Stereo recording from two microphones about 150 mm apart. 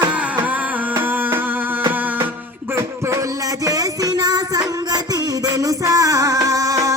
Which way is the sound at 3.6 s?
25° right (ahead or behind).